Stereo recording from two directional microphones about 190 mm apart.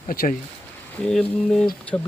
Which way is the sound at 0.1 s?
50° left (ahead or behind).